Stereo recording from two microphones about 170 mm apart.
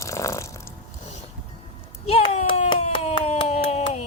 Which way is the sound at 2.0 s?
35° left (ahead or behind).